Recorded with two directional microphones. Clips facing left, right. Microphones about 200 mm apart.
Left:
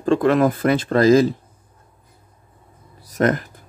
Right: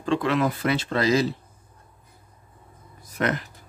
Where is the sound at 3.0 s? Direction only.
40° left (ahead or behind).